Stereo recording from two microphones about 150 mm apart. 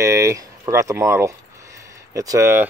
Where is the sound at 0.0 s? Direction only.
20° right (ahead or behind).